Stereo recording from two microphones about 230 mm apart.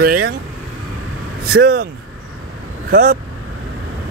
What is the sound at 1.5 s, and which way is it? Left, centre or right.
Speech, right.